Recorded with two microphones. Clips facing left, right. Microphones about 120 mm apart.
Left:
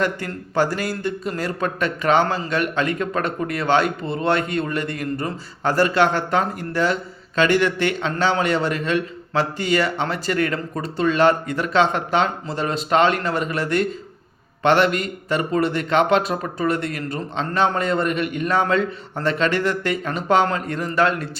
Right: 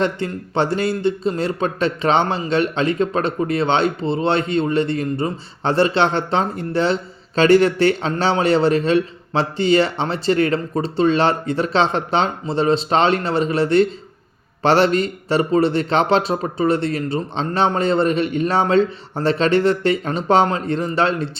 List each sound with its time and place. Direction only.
0.0 s a man's voice: 25° right (ahead or behind)